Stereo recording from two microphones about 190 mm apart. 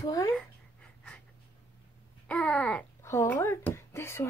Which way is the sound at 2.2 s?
5° left (ahead or behind).